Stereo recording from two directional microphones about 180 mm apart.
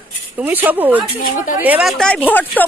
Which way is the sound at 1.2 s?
50° left (ahead or behind).